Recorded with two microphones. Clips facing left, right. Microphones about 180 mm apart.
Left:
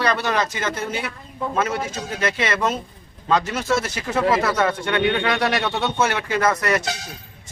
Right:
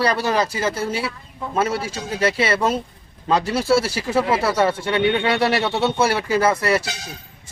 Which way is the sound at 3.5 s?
10° right (ahead or behind).